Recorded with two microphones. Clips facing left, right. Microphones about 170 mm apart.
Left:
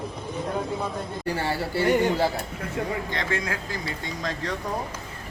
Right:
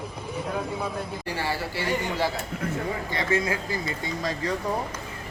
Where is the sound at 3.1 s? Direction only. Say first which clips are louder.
Right 3 dB; 5° right (ahead or behind).